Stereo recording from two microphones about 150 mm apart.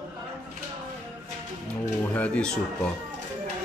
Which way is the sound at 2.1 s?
5° left (ahead or behind).